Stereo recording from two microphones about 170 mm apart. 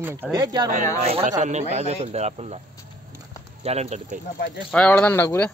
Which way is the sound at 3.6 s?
40° right (ahead or behind).